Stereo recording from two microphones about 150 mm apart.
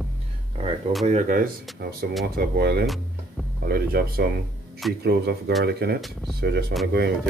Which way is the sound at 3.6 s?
90° right.